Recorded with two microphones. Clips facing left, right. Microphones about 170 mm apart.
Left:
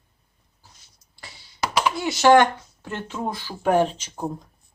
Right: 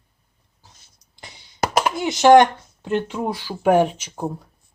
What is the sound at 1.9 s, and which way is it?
Speech, 20° right (ahead or behind).